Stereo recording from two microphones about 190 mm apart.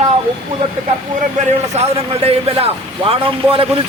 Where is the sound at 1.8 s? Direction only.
35° right (ahead or behind).